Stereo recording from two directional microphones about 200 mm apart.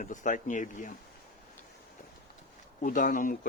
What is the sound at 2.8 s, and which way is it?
Speech, 40° left (ahead or behind).